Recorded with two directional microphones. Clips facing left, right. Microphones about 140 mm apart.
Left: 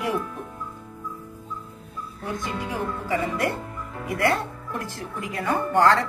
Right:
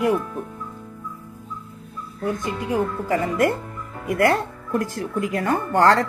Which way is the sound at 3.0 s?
45° right (ahead or behind).